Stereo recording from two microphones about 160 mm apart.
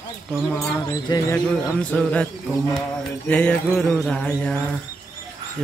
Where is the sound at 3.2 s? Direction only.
5° left (ahead or behind).